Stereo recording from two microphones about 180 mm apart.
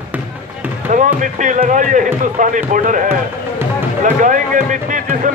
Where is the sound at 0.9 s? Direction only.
45° right (ahead or behind).